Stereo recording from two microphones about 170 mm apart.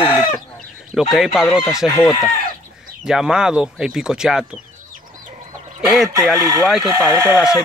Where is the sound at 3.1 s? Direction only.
5° right (ahead or behind).